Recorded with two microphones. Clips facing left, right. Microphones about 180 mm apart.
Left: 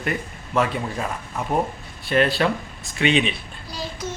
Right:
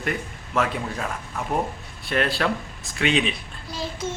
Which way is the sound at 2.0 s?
Centre (ahead or behind).